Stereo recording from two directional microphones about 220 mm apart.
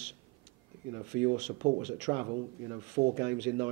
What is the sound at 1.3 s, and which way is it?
A man's voice, 30° right (ahead or behind).